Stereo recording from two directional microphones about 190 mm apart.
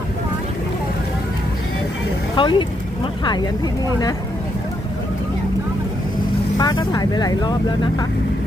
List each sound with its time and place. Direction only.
2.3 s speech: 25° left (ahead or behind)
6.6 s speech: 20° left (ahead or behind)